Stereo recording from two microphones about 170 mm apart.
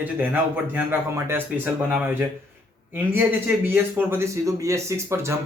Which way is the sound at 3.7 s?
10° right (ahead or behind).